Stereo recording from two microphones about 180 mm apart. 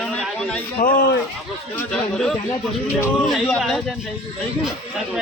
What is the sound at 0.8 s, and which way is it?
Speech, 50° left (ahead or behind).